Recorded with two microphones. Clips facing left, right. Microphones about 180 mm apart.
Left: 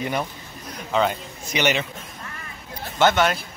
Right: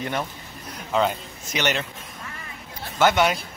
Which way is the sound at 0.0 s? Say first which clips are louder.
Left 2 dB; 5° left (ahead or behind).